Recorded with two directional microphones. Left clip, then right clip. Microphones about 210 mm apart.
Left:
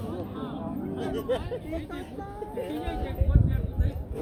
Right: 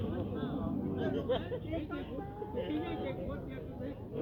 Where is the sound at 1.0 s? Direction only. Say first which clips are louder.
Left 5 dB; 45° left (ahead or behind).